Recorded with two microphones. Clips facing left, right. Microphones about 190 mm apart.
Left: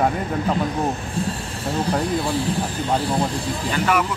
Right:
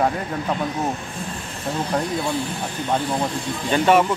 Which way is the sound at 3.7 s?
25° right (ahead or behind).